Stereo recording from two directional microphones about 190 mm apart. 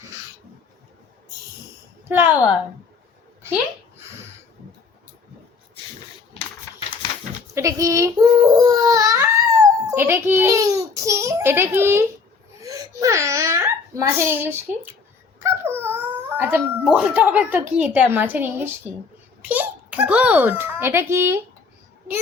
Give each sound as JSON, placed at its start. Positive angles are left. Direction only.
{"t": 2.0, "sound": "a woman's voice", "side_deg": -10}
{"t": 7.5, "sound": "speech", "side_deg": -15}
{"t": 12.6, "sound": "laughter", "side_deg": -20}
{"t": 15.4, "sound": "dog", "side_deg": -10}
{"t": 16.4, "sound": "a child's voice", "side_deg": -5}